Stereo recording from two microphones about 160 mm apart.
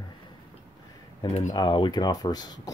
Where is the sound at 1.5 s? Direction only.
30° left (ahead or behind).